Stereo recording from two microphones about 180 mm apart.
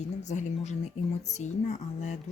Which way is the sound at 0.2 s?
40° left (ahead or behind).